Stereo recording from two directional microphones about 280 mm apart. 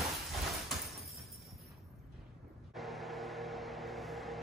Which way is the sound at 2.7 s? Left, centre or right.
Centre.